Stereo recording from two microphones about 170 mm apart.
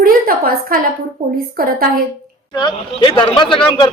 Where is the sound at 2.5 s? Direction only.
25° left (ahead or behind).